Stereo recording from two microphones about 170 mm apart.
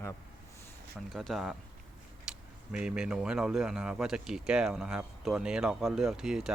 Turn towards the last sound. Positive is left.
turn(degrees=-5)  # may be behind; listen again after turning